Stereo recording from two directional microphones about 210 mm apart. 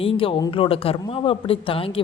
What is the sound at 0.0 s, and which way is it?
Speech, 25° left (ahead or behind).